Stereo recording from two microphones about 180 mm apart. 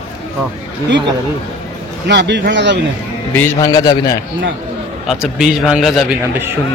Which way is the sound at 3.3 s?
15° left (ahead or behind).